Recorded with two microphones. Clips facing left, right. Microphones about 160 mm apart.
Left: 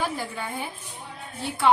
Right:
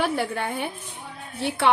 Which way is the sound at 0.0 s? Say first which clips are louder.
Right 5 dB; 70° right (ahead or behind).